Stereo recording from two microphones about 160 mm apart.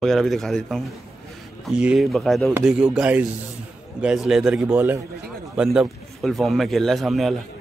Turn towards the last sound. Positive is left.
turn(degrees=0)  # may be behind; listen again after turning